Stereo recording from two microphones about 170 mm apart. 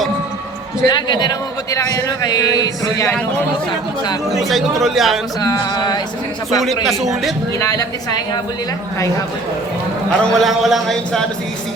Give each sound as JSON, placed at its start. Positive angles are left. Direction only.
{"t": 0.9, "sound": "a man's voice", "side_deg": 25}
{"t": 4.4, "sound": "a man's voice", "side_deg": 0}
{"t": 5.4, "sound": "a man's voice", "side_deg": 25}
{"t": 6.8, "sound": "a man's voice", "side_deg": 0}
{"t": 7.6, "sound": "a man's voice", "side_deg": 20}
{"t": 10.1, "sound": "a man's voice", "side_deg": 5}